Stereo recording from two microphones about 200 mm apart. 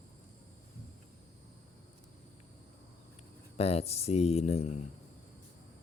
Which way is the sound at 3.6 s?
30° left (ahead or behind).